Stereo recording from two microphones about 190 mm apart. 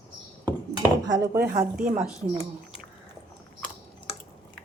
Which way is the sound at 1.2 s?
55° right (ahead or behind).